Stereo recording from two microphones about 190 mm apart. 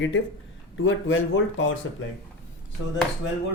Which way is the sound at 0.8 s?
85° left.